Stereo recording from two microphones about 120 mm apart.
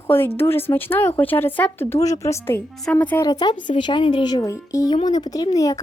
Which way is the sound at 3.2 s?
35° left (ahead or behind).